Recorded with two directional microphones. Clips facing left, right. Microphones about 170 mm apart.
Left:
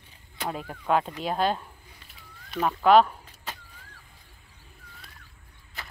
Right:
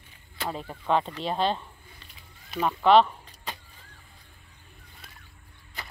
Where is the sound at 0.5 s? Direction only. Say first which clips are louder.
Left 1 dB; 5° left (ahead or behind).